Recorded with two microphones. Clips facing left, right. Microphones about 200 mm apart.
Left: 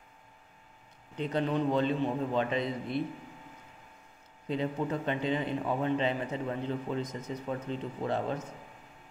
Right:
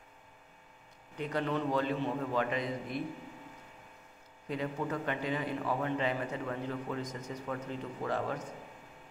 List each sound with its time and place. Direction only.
1.1 s a man's voice: 25° left (ahead or behind)
4.5 s a man's voice: 25° left (ahead or behind)